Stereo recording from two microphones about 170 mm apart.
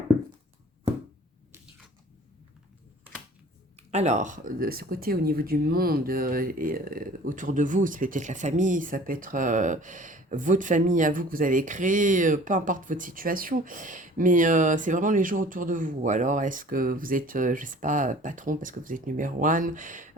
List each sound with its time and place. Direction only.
3.8 s speech: 40° right (ahead or behind)